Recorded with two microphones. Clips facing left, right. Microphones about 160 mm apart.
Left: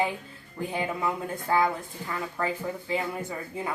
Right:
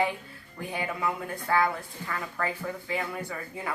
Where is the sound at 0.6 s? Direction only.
20° left (ahead or behind).